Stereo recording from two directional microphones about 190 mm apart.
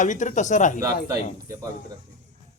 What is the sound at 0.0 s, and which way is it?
Speech, 40° left (ahead or behind).